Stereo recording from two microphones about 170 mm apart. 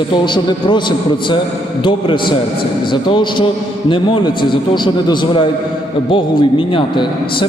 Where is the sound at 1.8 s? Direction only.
30° left (ahead or behind).